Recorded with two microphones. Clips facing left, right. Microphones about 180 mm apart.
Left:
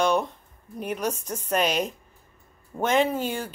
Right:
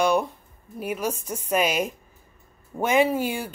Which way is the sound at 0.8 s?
5° right (ahead or behind).